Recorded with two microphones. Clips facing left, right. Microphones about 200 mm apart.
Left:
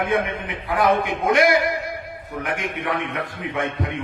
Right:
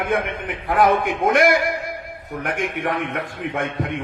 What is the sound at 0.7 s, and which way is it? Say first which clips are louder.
A man's voice: right 2 dB; 45° right (ahead or behind).